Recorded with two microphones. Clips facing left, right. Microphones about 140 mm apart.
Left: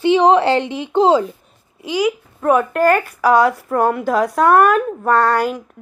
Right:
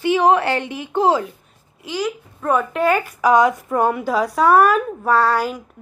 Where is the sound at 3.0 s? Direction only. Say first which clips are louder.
Left 1 dB; 15° right (ahead or behind).